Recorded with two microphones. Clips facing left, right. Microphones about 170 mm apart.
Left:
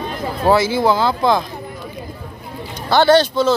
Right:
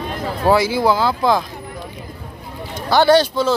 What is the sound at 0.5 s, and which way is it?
Speech, 10° right (ahead or behind).